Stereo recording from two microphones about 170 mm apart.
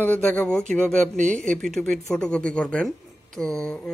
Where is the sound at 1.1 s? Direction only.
45° right (ahead or behind).